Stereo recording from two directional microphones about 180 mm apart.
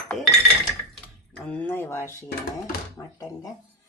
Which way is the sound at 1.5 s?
10° left (ahead or behind).